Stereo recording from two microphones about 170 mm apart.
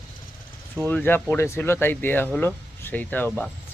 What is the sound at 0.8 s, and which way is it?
Speech, 10° left (ahead or behind).